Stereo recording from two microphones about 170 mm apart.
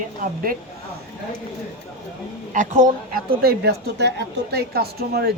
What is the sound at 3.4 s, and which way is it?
A woman's voice, 70° right (ahead or behind).